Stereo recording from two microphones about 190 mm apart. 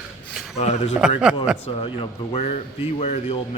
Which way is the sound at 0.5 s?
35° left (ahead or behind).